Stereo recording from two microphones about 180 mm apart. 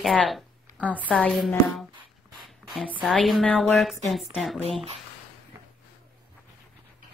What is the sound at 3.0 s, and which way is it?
A woman's voice, centre (ahead or behind).